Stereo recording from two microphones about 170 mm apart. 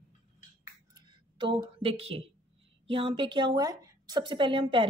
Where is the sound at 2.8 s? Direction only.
30° right (ahead or behind).